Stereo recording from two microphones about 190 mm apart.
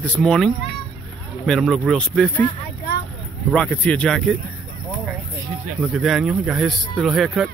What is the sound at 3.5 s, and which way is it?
Speech, 5° left (ahead or behind).